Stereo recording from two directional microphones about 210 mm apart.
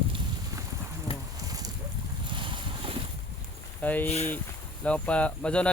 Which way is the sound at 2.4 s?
25° right (ahead or behind).